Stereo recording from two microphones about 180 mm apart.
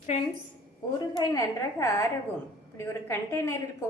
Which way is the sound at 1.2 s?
20° left (ahead or behind).